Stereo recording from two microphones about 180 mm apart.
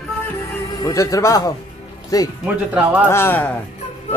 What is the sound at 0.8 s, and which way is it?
A man's voice, 20° left (ahead or behind).